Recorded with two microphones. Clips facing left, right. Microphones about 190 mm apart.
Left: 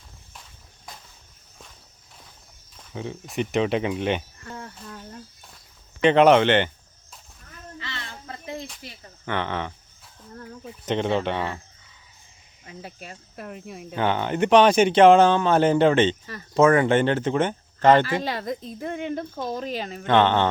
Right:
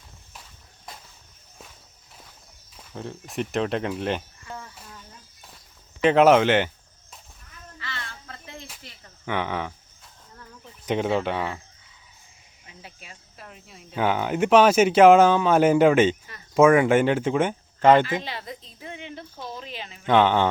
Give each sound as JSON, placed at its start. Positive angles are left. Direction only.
{"t": 2.7, "sound": "speech", "side_deg": 0}
{"t": 4.6, "sound": "a sound", "side_deg": 65}
{"t": 6.0, "sound": "speech", "side_deg": -5}
{"t": 7.8, "sound": "a sound", "side_deg": 20}
{"t": 9.2, "sound": "speech", "side_deg": -10}
{"t": 10.8, "sound": "speech", "side_deg": -5}
{"t": 12.6, "sound": "speech", "side_deg": 45}
{"t": 13.9, "sound": "speech", "side_deg": -5}
{"t": 18.0, "sound": "speech", "side_deg": 45}
{"t": 20.1, "sound": "speech", "side_deg": -10}